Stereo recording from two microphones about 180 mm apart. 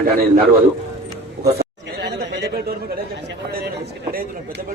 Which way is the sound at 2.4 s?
60° right (ahead or behind).